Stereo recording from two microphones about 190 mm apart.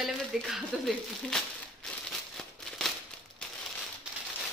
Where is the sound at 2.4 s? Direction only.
Centre (ahead or behind).